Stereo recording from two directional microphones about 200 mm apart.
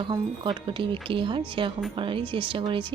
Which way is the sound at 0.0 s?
25° right (ahead or behind).